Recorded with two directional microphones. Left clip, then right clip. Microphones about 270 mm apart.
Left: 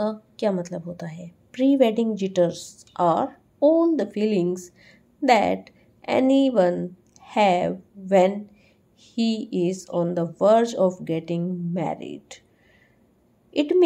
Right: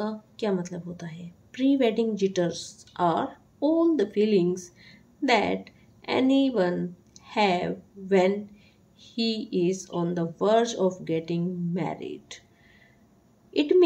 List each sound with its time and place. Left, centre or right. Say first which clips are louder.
0.0 s a woman's voice: left 6 dB; centre
13.5 s a woman's voice: left 1 dB; centre